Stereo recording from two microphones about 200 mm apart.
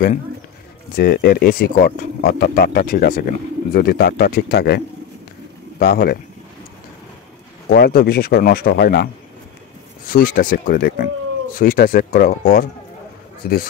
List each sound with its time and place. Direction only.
0.9 s speech: 50° left (ahead or behind)
7.7 s speech: 50° left (ahead or behind)